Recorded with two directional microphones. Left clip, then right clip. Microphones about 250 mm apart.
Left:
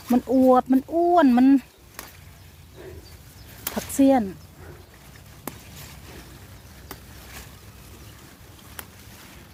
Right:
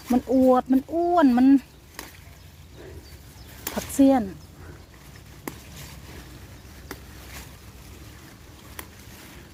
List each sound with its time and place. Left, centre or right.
0.1 s speech: left
3.8 s speech: left